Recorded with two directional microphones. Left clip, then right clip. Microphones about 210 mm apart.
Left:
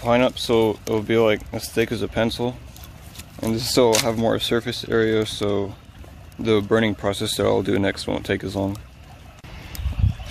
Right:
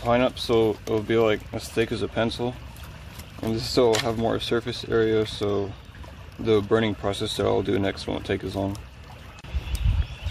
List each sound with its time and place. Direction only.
0.0 s speech: 40° left (ahead or behind)